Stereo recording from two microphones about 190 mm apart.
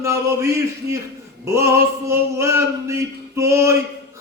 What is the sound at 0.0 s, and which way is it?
Mantra, 15° right (ahead or behind).